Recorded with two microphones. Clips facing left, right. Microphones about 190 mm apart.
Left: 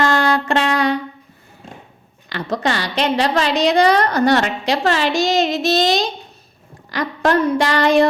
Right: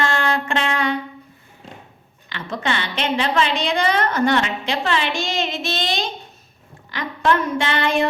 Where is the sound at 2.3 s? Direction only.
40° left (ahead or behind).